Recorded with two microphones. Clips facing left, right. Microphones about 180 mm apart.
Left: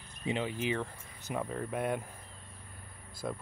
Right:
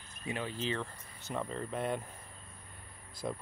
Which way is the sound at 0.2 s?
20° left (ahead or behind).